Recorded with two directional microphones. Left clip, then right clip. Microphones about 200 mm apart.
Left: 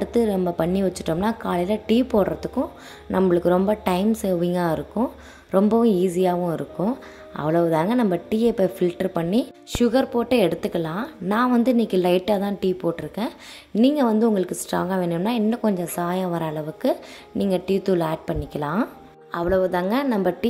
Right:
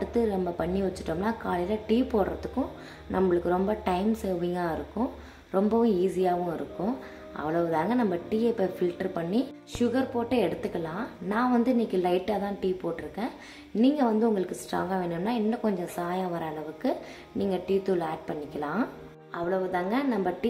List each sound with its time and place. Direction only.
0.0 s a woman's voice: 45° left (ahead or behind)